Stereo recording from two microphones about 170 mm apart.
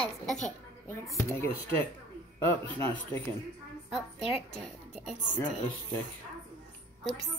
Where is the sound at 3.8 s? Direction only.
5° right (ahead or behind).